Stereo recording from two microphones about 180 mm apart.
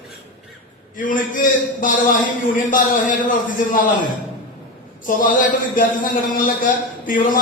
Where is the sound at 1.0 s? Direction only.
50° left (ahead or behind).